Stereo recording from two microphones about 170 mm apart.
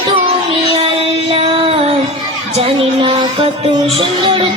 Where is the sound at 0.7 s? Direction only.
30° right (ahead or behind).